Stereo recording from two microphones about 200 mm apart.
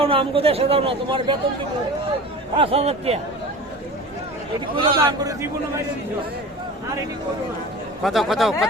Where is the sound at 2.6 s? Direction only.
30° right (ahead or behind).